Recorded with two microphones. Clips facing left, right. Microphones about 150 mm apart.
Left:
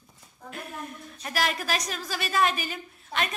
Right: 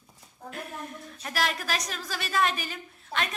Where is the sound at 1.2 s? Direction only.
5° left (ahead or behind).